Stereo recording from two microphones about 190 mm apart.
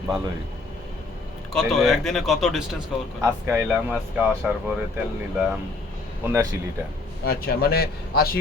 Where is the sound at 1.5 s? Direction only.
Centre (ahead or behind).